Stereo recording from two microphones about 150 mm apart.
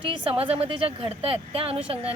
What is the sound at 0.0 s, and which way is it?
A woman's voice, 35° right (ahead or behind).